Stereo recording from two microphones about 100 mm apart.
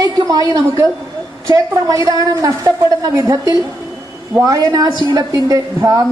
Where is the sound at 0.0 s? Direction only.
40° right (ahead or behind).